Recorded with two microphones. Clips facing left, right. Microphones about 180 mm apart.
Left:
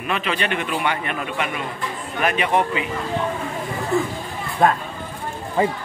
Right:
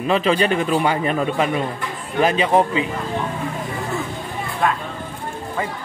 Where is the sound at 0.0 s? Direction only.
30° right (ahead or behind).